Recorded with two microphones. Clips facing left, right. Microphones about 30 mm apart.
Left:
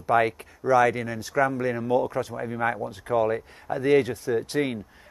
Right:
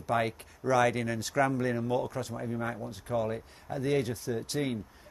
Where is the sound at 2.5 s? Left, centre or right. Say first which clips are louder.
Left 11 dB; left.